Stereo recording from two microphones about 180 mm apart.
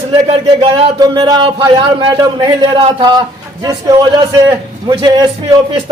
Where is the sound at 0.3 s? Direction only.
25° right (ahead or behind).